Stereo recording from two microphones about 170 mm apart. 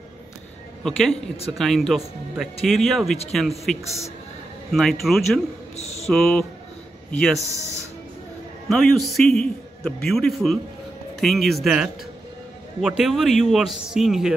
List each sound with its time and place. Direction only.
0.8 s a man's voice: 5° left (ahead or behind)
4.7 s a man's voice: centre (ahead or behind)
5.8 s mantra: 40° left (ahead or behind)
6.1 s a man's voice: 5° left (ahead or behind)
8.6 s a man's voice: centre (ahead or behind)